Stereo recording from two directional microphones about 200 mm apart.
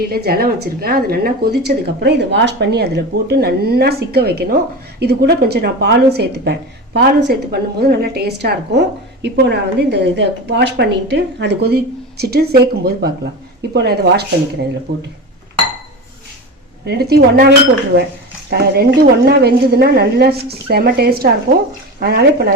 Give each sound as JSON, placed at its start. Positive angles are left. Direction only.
{"t": 0.0, "sound": "a woman's voice", "side_deg": -50}
{"t": 16.8, "sound": "a woman's voice", "side_deg": -55}
{"t": 18.5, "sound": "a woman's voice", "side_deg": -50}